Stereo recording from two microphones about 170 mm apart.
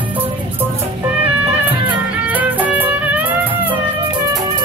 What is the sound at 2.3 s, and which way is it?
Music, 10° right (ahead or behind).